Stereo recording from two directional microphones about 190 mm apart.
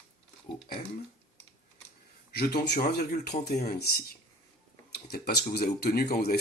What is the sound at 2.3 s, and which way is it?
Speech, 55° left (ahead or behind).